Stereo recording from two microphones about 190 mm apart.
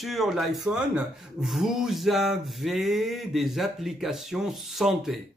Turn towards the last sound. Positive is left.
turn(degrees=0)  # may be behind; listen again after turning